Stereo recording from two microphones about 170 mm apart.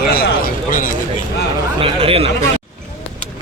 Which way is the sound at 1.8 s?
35° right (ahead or behind).